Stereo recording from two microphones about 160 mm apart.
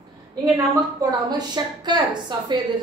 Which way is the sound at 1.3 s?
25° right (ahead or behind).